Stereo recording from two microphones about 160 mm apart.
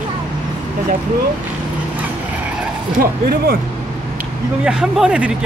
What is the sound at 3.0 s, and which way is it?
Speech, 70° right (ahead or behind).